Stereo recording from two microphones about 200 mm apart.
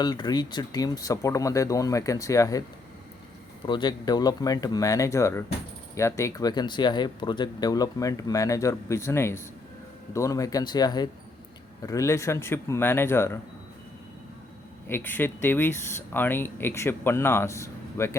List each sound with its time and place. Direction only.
0.0 s speech: 20° left (ahead or behind)
3.7 s speech: 20° left (ahead or behind)
14.8 s speech: 10° left (ahead or behind)